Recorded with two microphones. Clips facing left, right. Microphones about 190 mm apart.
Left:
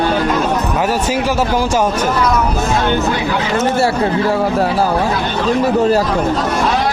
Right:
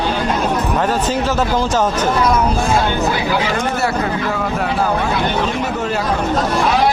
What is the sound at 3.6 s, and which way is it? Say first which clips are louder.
A man's voice: left 4 dB; 30° left (ahead or behind).